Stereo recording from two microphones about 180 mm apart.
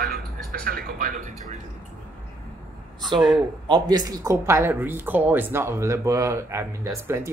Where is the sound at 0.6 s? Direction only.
55° right (ahead or behind).